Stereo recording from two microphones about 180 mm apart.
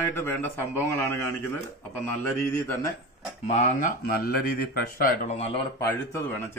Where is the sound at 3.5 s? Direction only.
40° left (ahead or behind).